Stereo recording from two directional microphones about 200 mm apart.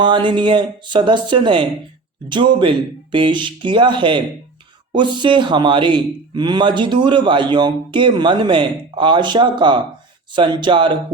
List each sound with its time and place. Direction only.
0.0 s a man's voice: 25° right (ahead or behind)